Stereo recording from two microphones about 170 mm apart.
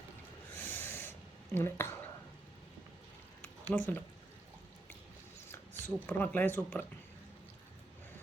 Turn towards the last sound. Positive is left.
turn(degrees=10)  # may be behind; listen again after turning